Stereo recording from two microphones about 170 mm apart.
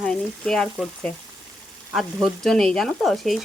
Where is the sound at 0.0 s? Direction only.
5° left (ahead or behind).